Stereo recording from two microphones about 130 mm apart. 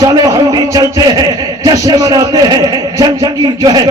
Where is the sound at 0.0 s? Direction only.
30° right (ahead or behind).